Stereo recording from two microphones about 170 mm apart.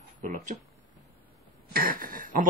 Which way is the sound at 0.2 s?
45° right (ahead or behind).